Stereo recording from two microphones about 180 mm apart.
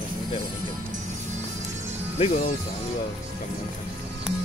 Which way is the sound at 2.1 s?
40° left (ahead or behind).